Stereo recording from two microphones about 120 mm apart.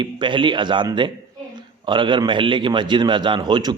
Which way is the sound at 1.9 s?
40° right (ahead or behind).